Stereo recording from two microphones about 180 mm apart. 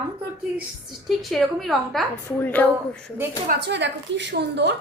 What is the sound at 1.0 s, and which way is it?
A woman's voice, centre (ahead or behind).